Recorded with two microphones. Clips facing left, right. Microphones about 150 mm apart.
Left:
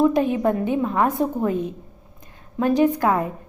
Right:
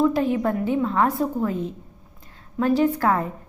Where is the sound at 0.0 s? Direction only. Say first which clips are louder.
Left 2 dB; 20° left (ahead or behind).